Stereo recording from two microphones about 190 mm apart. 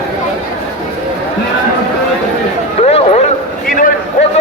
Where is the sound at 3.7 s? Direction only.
45° left (ahead or behind).